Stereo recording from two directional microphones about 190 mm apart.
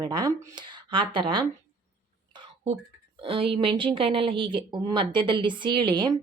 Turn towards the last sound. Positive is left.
turn(degrees=-25)  # may be behind; listen again after turning